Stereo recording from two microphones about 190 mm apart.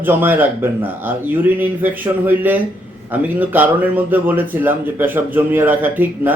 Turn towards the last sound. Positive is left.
turn(degrees=-10)  # may be behind; listen again after turning